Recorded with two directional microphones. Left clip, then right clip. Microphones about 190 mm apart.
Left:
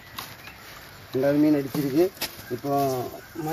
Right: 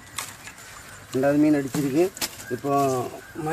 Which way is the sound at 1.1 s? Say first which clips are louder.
Right 1 dB; 5° right (ahead or behind).